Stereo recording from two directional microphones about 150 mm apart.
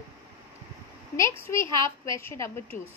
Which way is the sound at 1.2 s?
20° left (ahead or behind).